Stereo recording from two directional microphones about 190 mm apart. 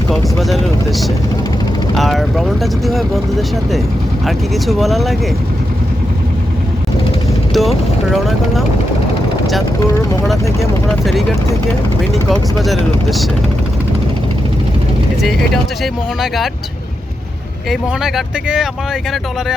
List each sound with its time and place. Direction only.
0.3 s speech: centre (ahead or behind)
7.5 s speech: centre (ahead or behind)
10.6 s speech: centre (ahead or behind)
15.8 s speech: centre (ahead or behind)
17.7 s speech: 5° right (ahead or behind)